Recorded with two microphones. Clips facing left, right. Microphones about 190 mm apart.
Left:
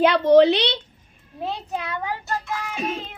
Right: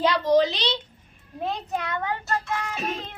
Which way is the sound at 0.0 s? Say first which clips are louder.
Left 6 dB; 60° left (ahead or behind).